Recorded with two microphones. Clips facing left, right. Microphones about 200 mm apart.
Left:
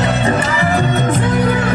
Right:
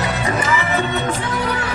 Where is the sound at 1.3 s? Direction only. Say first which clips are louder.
Left 7 dB; 55° left (ahead or behind).